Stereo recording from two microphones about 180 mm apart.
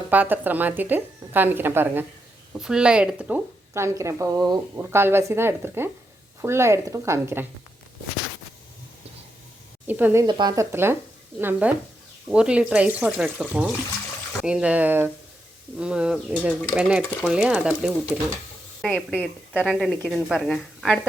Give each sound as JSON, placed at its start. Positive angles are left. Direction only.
{"t": 0.1, "sound": "a woman's voice", "side_deg": -10}
{"t": 9.8, "sound": "speech", "side_deg": -10}
{"t": 10.2, "sound": "a woman's voice", "side_deg": -25}